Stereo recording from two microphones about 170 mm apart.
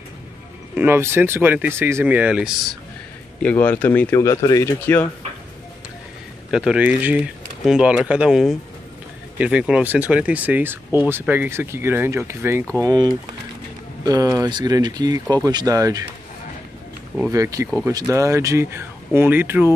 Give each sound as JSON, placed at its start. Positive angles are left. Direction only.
{"t": 0.7, "sound": "speech", "side_deg": -15}
{"t": 3.4, "sound": "speech", "side_deg": 10}
{"t": 6.5, "sound": "speech", "side_deg": -5}
{"t": 12.8, "sound": "speech", "side_deg": -25}
{"t": 17.3, "sound": "speech", "side_deg": -20}